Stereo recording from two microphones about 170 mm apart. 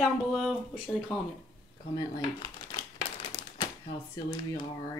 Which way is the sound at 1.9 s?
30° left (ahead or behind).